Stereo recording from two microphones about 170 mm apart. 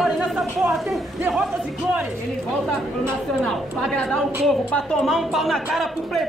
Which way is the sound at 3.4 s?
5° left (ahead or behind).